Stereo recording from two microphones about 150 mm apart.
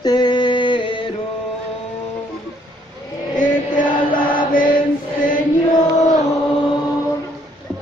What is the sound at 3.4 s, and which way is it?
Chant, 65° left (ahead or behind).